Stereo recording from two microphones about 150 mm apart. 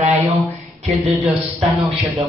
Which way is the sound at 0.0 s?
45° right (ahead or behind).